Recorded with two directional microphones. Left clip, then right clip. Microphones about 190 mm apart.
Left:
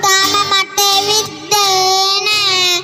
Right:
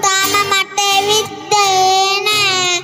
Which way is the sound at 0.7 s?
85° right.